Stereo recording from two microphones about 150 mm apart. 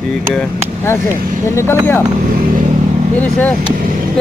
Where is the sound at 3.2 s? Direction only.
10° left (ahead or behind).